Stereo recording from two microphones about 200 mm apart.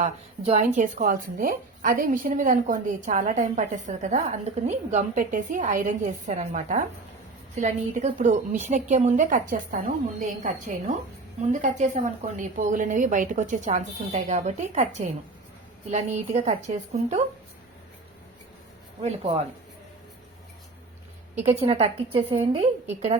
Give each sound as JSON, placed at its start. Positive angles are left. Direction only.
{"t": 0.0, "sound": "a woman's voice", "side_deg": -35}
{"t": 21.4, "sound": "a woman's voice", "side_deg": -30}